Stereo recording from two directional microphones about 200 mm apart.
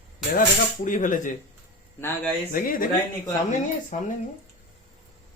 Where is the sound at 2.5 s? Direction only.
45° left (ahead or behind).